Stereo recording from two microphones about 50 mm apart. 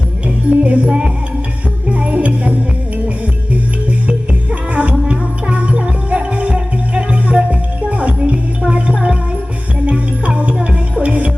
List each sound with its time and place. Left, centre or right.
0.3 s music: right
4.7 s music: right